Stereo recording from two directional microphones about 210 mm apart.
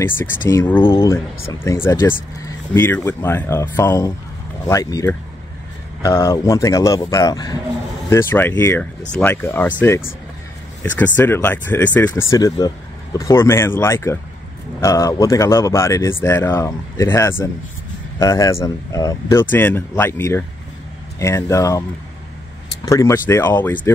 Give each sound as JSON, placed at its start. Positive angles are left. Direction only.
{"t": 0.5, "sound": "speech", "side_deg": 10}
{"t": 22.8, "sound": "speech", "side_deg": 15}